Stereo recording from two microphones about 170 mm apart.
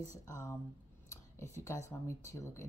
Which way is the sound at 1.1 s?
15° left (ahead or behind).